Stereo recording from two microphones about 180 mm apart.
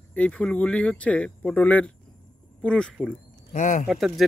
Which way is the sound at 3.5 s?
45° left (ahead or behind).